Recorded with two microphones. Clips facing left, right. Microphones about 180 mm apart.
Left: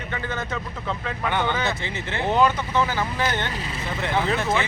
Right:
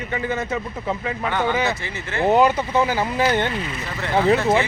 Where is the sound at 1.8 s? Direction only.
15° left (ahead or behind).